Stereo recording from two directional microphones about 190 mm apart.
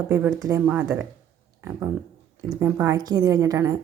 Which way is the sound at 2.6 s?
15° right (ahead or behind).